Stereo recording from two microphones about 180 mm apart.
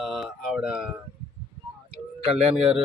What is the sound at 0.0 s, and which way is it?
Speech, centre (ahead or behind).